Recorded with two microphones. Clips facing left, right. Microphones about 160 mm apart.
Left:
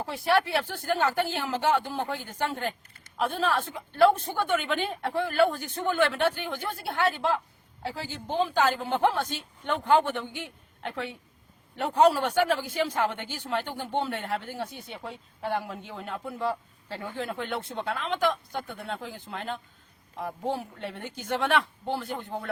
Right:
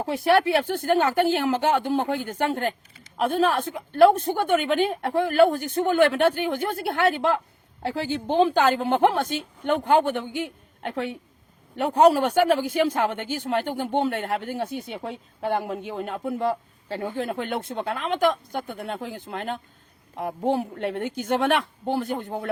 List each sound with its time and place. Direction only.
0.0 s a woman's voice: 50° right (ahead or behind)